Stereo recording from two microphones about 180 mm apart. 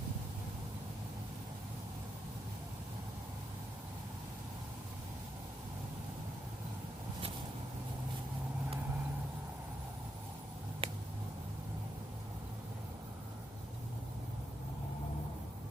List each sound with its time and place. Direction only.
10.8 s finger snapping: 30° right (ahead or behind)